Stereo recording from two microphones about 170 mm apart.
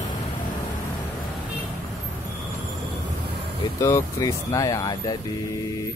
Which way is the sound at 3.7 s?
15° left (ahead or behind).